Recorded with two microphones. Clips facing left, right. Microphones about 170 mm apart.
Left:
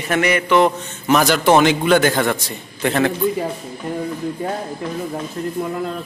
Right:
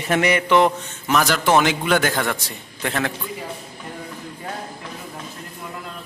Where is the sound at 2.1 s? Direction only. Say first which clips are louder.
Left 5 dB; 10° left (ahead or behind).